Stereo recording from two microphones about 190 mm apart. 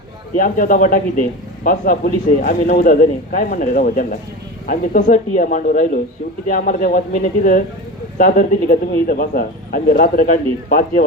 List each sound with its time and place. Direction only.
0.3 s a man's voice: 45° left (ahead or behind)